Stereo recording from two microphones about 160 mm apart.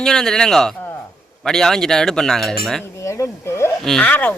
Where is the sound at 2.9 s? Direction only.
20° left (ahead or behind).